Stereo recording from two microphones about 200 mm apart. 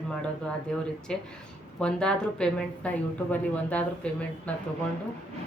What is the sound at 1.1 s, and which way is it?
A woman's voice, 5° left (ahead or behind).